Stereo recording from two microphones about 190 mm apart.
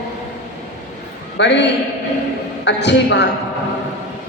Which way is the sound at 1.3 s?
65° left (ahead or behind).